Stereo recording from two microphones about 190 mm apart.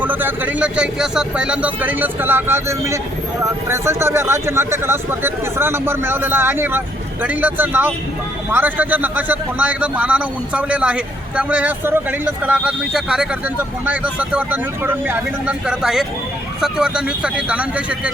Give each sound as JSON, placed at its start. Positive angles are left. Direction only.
{"t": 0.0, "sound": "a man's voice", "side_deg": -10}